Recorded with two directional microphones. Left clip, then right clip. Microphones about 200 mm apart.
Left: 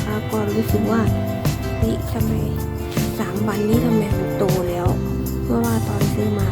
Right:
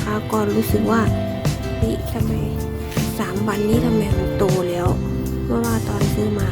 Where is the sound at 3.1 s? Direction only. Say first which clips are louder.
Right 3 dB; 15° right (ahead or behind).